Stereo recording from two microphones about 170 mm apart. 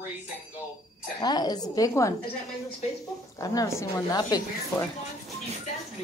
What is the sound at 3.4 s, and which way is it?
A woman's voice, 20° left (ahead or behind).